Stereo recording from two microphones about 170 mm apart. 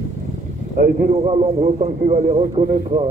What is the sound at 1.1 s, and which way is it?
A man's voice, 35° right (ahead or behind).